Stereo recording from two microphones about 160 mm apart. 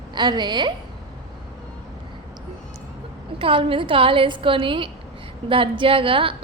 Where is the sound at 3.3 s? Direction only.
35° right (ahead or behind).